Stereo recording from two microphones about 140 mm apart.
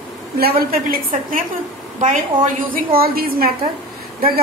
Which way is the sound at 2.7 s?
90° right.